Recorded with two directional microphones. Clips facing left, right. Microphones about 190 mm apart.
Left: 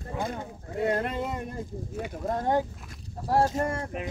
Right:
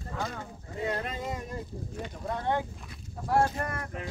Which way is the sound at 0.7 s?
55° left (ahead or behind).